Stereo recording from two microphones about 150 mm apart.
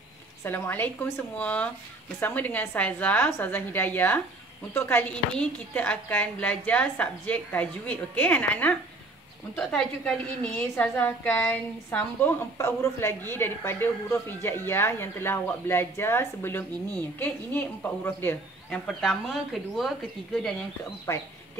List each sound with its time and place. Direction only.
0.4 s speech: 15° left (ahead or behind)
21.1 s speech: 20° left (ahead or behind)